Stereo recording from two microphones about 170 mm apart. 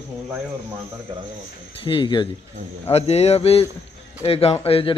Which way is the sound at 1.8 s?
30° left (ahead or behind).